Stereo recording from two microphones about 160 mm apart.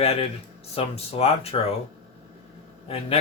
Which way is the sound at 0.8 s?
40° left (ahead or behind).